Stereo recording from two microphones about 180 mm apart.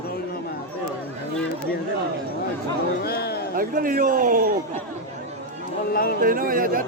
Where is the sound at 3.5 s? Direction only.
50° right (ahead or behind).